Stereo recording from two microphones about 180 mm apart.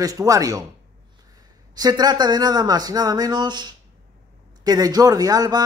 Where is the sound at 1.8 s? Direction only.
20° right (ahead or behind).